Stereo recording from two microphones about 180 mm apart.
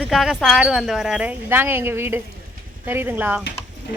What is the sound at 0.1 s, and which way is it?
A woman's voice, centre (ahead or behind).